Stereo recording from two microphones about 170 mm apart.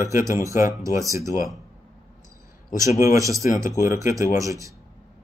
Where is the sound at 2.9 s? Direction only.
20° right (ahead or behind).